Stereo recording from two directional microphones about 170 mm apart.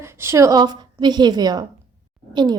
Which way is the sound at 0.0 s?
15° right (ahead or behind).